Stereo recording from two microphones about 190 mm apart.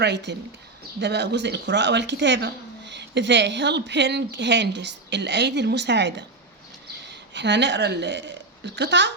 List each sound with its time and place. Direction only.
0.0 s a woman's voice: 65° right (ahead or behind)